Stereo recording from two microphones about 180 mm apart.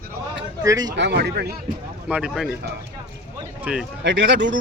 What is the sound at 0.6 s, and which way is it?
Speech, 20° right (ahead or behind).